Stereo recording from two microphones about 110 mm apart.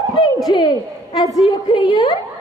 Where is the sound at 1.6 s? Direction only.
45° left (ahead or behind).